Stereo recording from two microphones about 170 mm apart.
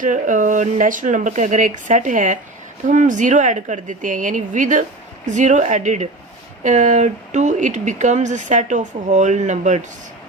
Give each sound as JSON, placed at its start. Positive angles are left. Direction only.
{"t": 0.0, "sound": "speech", "side_deg": -50}